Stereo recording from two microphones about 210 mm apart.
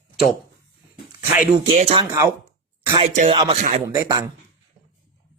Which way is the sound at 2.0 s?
15° right (ahead or behind).